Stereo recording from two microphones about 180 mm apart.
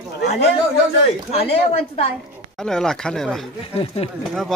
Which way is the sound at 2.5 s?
5° left (ahead or behind).